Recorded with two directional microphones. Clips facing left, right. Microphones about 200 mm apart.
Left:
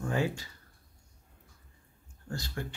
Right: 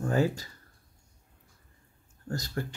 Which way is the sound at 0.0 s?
40° right (ahead or behind).